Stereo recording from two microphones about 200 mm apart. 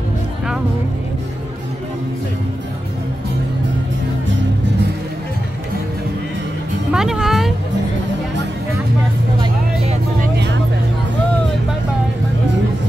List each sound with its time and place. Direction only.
6.9 s music: 5° right (ahead or behind)
10.3 s vehicle: 60° right (ahead or behind)